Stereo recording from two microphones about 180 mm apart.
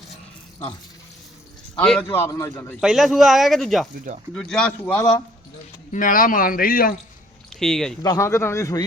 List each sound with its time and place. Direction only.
1.8 s a man's voice: 5° left (ahead or behind)
2.8 s a man's voice: centre (ahead or behind)
4.9 s a man's voice: 20° left (ahead or behind)
5.9 s speech: 50° left (ahead or behind)
7.5 s speech: 5° left (ahead or behind)
8.0 s a man's voice: 20° left (ahead or behind)